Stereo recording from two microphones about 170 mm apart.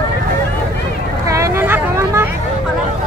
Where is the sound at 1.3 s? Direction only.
15° right (ahead or behind).